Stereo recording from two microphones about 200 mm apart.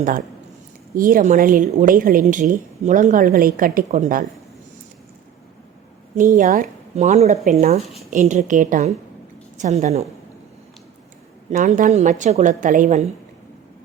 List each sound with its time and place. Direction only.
0.9 s a woman's voice: 45° right (ahead or behind)
6.1 s a woman's voice: 40° right (ahead or behind)
11.5 s a woman's voice: 40° right (ahead or behind)